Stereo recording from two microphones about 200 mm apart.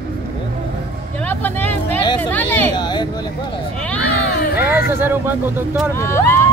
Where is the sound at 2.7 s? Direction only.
20° left (ahead or behind).